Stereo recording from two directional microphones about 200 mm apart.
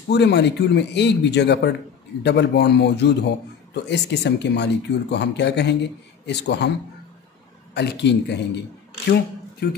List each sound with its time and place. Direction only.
0.1 s speech: 60° left (ahead or behind)
7.7 s speech: 60° left (ahead or behind)
9.6 s speech: 50° left (ahead or behind)